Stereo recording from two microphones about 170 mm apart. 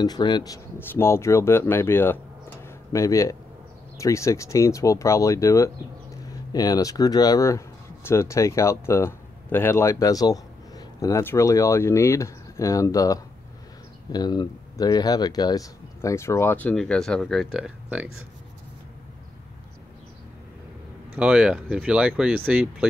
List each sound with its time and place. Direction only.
0.0 s speech: 25° left (ahead or behind)
2.6 s a sound: 20° left (ahead or behind)
4.0 s speech: 15° left (ahead or behind); by 18.1 s 5° right (ahead or behind)
21.1 s speech: 5° right (ahead or behind)